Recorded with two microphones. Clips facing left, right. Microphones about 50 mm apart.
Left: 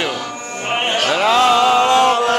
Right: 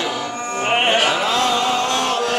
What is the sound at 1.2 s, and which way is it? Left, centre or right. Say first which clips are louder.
Chant: left 6 dB; left.